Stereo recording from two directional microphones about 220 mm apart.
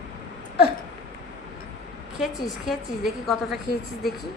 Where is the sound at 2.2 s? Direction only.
Centre (ahead or behind).